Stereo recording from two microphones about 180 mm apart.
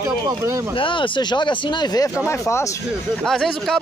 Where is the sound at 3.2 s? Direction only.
Centre (ahead or behind).